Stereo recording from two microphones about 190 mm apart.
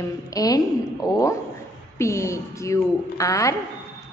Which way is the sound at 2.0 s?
15° left (ahead or behind).